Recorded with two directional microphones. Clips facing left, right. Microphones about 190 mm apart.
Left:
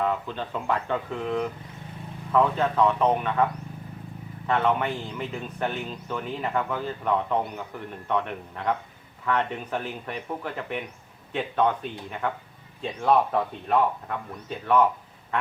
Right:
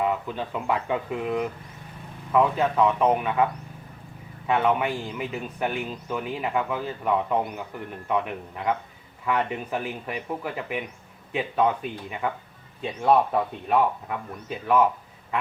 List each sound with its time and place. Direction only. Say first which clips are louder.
0.0 s speech: right 1 dB; 10° right (ahead or behind)
4.4 s speech: right 1 dB; 10° right (ahead or behind)